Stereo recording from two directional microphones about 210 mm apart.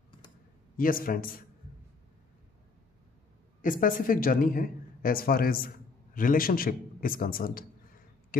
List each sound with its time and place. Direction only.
0.7 s a woman's voice: 40° left (ahead or behind)
3.6 s a woman's voice: 40° left (ahead or behind)